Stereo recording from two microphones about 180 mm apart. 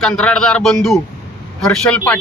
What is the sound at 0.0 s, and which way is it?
Speech, 5° left (ahead or behind).